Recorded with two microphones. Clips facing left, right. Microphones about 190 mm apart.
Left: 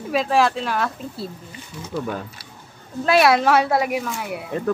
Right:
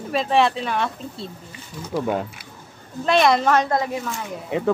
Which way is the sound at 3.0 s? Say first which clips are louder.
Left 1 dB; 5° left (ahead or behind).